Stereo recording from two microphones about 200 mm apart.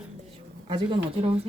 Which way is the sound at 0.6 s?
25° right (ahead or behind).